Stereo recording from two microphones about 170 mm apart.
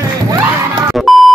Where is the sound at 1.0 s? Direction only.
Centre (ahead or behind).